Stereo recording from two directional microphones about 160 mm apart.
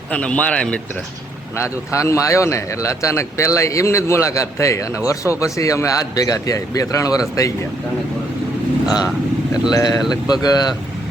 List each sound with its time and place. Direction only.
0.1 s a man's voice: 10° left (ahead or behind)
1.6 s speech: 20° left (ahead or behind)
8.9 s speech: 5° right (ahead or behind)
9.7 s speech: 20° left (ahead or behind)